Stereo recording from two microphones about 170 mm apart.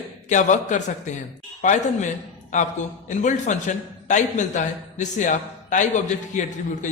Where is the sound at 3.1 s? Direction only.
45° left (ahead or behind).